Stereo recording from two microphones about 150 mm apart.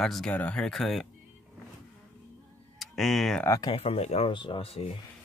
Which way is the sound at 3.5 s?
25° left (ahead or behind).